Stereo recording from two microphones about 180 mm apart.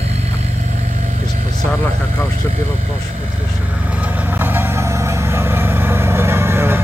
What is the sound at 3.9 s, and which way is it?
Vehicle, 10° right (ahead or behind).